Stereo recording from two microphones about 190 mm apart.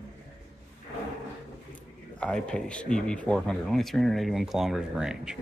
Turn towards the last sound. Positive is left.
turn(degrees=-5)  # may be behind; listen again after turning